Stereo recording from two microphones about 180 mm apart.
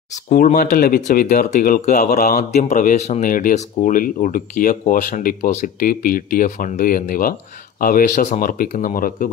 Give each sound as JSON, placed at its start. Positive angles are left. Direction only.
{"t": 0.1, "sound": "speech", "side_deg": 45}
{"t": 2.5, "sound": "speech", "side_deg": 45}